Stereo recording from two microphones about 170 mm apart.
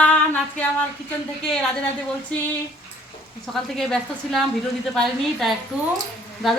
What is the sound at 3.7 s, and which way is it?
A woman's voice, centre (ahead or behind).